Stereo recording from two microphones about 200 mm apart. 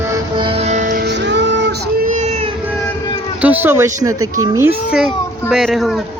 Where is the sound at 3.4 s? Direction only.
10° right (ahead or behind).